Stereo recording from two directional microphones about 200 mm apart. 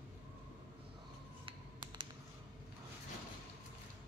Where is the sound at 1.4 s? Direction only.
25° right (ahead or behind).